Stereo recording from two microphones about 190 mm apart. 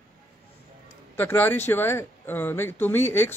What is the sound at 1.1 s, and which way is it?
Speech, 10° left (ahead or behind).